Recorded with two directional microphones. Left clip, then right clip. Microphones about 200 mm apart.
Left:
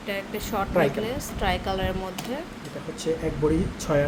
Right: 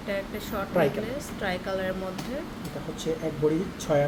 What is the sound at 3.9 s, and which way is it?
Speech, 15° left (ahead or behind).